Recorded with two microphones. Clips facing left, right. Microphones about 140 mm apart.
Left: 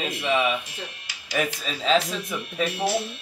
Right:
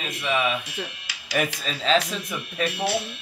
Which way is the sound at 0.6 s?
70° right (ahead or behind).